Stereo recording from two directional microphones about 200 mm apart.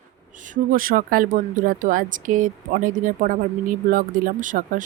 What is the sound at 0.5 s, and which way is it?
Speech, 45° right (ahead or behind).